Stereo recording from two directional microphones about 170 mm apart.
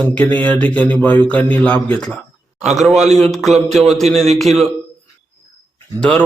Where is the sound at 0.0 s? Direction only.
10° left (ahead or behind).